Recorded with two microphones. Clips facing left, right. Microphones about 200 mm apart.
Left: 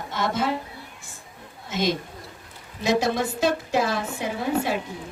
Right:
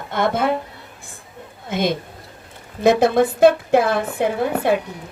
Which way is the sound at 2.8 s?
55° right (ahead or behind).